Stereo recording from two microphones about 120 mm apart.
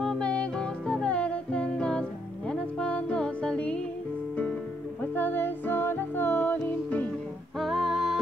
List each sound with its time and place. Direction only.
0.0 s music: 5° left (ahead or behind)
5.1 s music: 15° left (ahead or behind)
7.5 s music: centre (ahead or behind)